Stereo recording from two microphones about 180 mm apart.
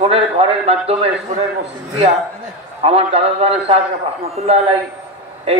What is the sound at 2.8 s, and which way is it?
A man's voice, 35° right (ahead or behind).